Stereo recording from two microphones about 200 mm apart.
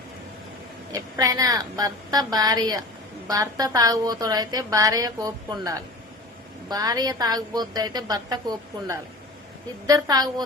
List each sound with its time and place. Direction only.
0.9 s a woman's voice: 20° right (ahead or behind)